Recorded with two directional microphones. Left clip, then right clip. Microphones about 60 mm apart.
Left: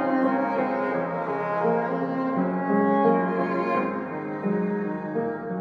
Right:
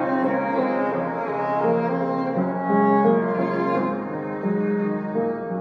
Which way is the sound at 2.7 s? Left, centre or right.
Left.